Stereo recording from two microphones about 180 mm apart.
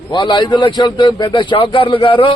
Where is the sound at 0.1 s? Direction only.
25° left (ahead or behind).